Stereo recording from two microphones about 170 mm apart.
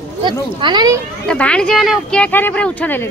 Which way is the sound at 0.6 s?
25° right (ahead or behind).